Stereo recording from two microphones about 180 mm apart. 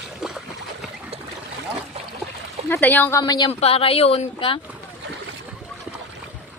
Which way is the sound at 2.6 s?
10° left (ahead or behind).